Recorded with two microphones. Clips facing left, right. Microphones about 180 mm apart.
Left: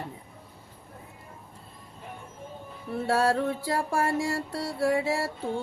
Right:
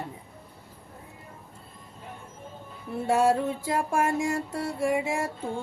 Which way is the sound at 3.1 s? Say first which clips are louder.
Right 2 dB; 15° right (ahead or behind).